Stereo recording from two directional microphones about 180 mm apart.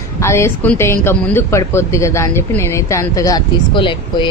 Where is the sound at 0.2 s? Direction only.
15° left (ahead or behind).